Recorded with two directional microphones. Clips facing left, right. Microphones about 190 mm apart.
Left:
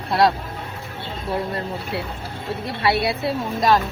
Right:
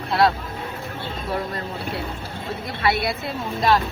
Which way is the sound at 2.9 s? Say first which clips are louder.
Left 4 dB; 35° left (ahead or behind).